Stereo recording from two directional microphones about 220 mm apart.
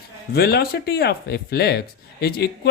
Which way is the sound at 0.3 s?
45° left (ahead or behind).